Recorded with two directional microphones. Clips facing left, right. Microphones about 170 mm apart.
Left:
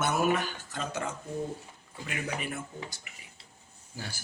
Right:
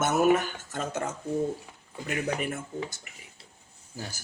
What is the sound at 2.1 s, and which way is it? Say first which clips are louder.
Speech: right 5 dB; 45° right (ahead or behind).